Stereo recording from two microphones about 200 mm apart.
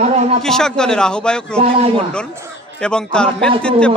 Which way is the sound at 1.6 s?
30° right (ahead or behind).